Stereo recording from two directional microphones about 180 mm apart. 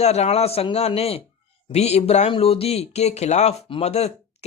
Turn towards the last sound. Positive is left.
turn(degrees=35)  # may be behind; listen again after turning